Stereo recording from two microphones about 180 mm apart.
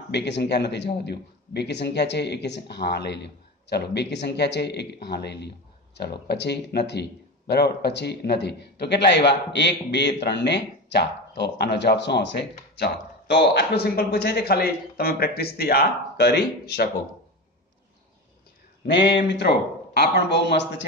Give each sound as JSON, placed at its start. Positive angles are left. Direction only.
{"t": 0.1, "sound": "a man's voice", "side_deg": 70}
{"t": 18.9, "sound": "a man's voice", "side_deg": 75}